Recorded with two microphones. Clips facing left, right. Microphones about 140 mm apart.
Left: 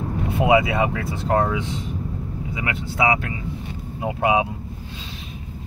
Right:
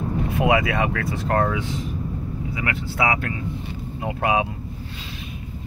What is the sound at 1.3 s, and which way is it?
Speech, 10° left (ahead or behind).